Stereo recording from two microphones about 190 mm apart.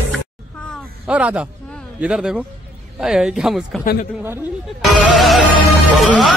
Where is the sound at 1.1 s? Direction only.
5° right (ahead or behind).